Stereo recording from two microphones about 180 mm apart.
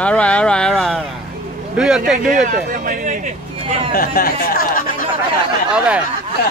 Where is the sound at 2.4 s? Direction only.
45° right (ahead or behind).